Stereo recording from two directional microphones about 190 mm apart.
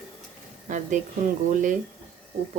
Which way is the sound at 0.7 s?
40° right (ahead or behind).